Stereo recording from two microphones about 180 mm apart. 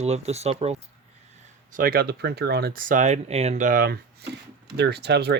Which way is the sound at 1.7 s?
55° right (ahead or behind).